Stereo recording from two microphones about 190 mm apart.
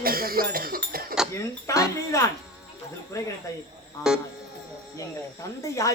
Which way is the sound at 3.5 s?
20° left (ahead or behind).